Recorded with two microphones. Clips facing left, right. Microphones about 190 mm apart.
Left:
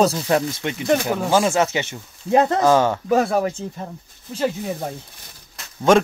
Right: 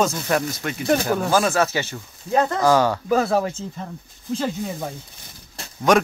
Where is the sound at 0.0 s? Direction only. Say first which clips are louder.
Left 3 dB; 30° left (ahead or behind).